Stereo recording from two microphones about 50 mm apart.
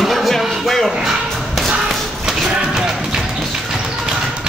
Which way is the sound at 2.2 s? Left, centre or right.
Centre.